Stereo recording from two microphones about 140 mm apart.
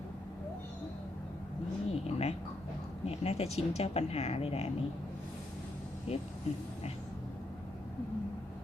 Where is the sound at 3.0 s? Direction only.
45° left (ahead or behind).